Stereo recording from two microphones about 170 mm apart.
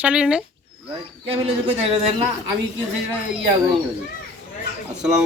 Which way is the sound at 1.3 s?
35° right (ahead or behind).